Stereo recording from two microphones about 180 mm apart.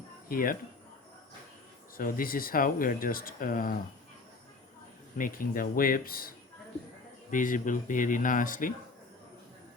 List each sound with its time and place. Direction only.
0.3 s speech: 50° left (ahead or behind)
2.0 s speech: 50° left (ahead or behind)
5.1 s speech: 50° left (ahead or behind)